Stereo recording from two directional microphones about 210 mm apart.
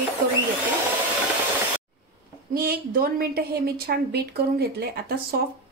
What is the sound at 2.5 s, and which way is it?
A woman's voice, 45° right (ahead or behind).